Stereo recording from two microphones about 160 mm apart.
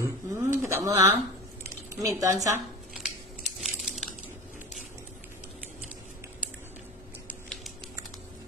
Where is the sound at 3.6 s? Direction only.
Centre (ahead or behind).